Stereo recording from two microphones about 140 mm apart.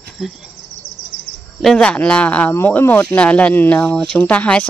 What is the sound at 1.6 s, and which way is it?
Speech, 5° left (ahead or behind).